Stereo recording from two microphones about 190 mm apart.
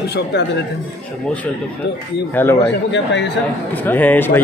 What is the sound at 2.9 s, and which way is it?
Speech, 70° left (ahead or behind).